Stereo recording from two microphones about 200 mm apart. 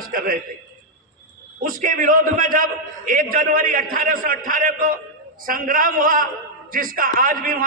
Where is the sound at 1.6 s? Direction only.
40° right (ahead or behind).